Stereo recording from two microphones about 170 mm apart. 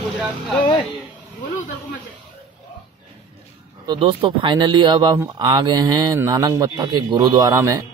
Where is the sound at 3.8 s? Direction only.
30° right (ahead or behind).